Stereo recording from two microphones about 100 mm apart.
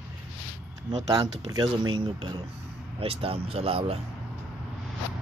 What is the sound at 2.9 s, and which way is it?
Speech, 70° right (ahead or behind).